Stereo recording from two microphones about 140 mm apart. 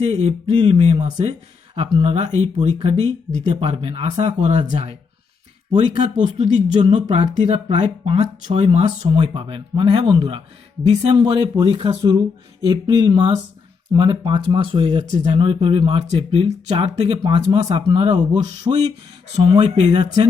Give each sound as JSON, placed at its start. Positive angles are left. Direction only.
{"t": 0.0, "sound": "speech", "side_deg": -50}
{"t": 6.1, "sound": "speech", "side_deg": -55}
{"t": 19.7, "sound": "speech", "side_deg": -50}